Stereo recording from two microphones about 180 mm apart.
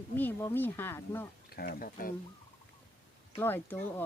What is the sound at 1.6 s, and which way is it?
Speech, 55° left (ahead or behind).